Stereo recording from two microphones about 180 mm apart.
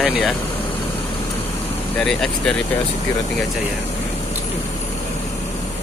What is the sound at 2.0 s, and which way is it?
Speech, 5° left (ahead or behind).